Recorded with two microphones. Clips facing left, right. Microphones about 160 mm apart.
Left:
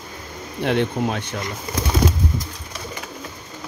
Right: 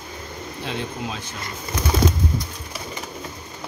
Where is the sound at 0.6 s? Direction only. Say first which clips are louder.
Left 9 dB; 60° left (ahead or behind).